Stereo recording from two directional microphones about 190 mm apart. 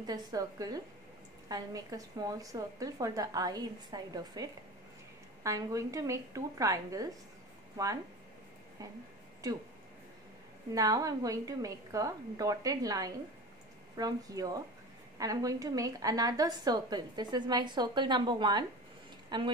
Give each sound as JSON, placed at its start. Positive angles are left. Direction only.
{"t": 0.0, "sound": "a woman's voice", "side_deg": -20}
{"t": 9.4, "sound": "a woman's voice", "side_deg": -20}
{"t": 10.7, "sound": "a woman's voice", "side_deg": -20}
{"t": 19.2, "sound": "a sound", "side_deg": -25}